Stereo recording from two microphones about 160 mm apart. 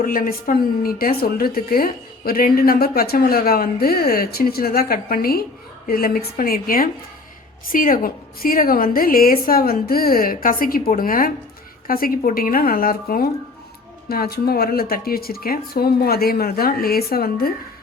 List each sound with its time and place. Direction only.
0.0 s a woman's voice: 65° left (ahead or behind)